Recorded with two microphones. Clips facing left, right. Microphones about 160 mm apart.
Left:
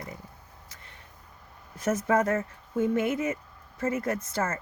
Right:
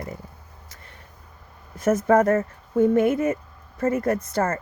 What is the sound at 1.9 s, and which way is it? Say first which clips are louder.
Speech: right 7 dB; 50° right (ahead or behind).